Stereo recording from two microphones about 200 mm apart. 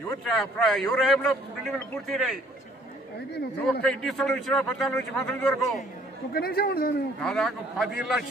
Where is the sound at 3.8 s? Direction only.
5° left (ahead or behind).